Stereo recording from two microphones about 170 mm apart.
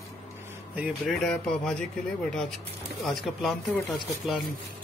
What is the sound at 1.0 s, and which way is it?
Speech, centre (ahead or behind).